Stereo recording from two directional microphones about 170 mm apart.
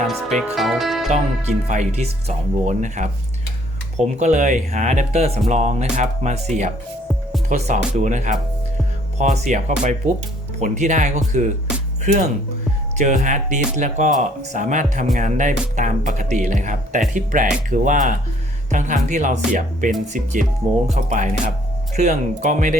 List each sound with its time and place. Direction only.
0.1 s speech: centre (ahead or behind)
1.1 s speech: 45° right (ahead or behind)